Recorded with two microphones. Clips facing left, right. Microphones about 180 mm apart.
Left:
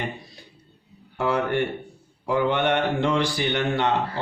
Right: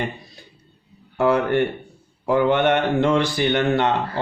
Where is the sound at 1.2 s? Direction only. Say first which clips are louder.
Right 5 dB; 55° right (ahead or behind).